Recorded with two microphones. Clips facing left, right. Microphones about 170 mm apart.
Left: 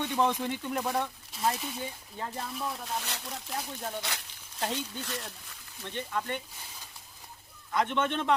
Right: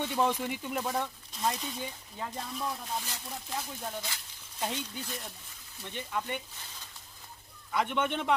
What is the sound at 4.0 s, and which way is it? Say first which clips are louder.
Speech: left 3 dB; 75° left (ahead or behind).